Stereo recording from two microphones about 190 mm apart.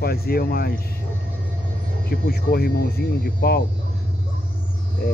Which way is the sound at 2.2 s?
55° left (ahead or behind).